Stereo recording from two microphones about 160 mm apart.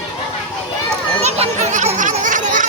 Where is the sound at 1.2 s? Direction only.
45° right (ahead or behind).